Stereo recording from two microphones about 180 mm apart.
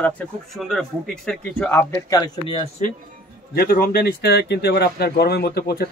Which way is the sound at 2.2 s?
25° left (ahead or behind).